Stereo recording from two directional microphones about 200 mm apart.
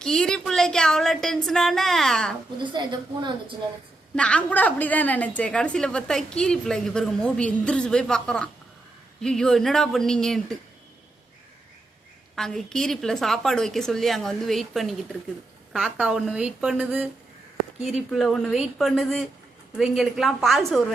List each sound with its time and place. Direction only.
0.0 s a woman's voice: 5° left (ahead or behind)
2.8 s a woman's voice: 20° right (ahead or behind)
4.1 s a woman's voice: 5° left (ahead or behind)
12.4 s a woman's voice: centre (ahead or behind)